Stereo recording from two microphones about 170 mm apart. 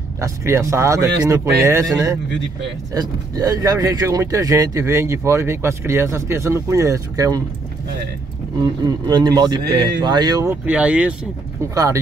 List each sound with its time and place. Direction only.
0.2 s speech: 15° right (ahead or behind)
8.8 s a man's voice: 25° right (ahead or behind)
10.5 s speech: 10° right (ahead or behind)
11.7 s a man's voice: 20° right (ahead or behind)